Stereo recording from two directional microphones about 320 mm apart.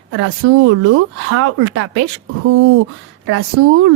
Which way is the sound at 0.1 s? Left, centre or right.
Right.